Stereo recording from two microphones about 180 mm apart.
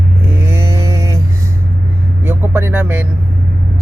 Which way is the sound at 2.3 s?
10° right (ahead or behind).